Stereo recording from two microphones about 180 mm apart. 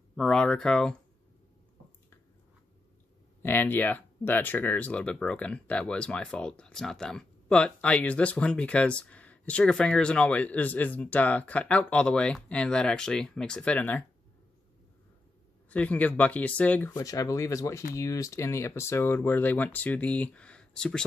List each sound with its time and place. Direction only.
0.1 s speech: 5° left (ahead or behind)
3.4 s speech: 10° left (ahead or behind)
15.7 s speech: 10° left (ahead or behind)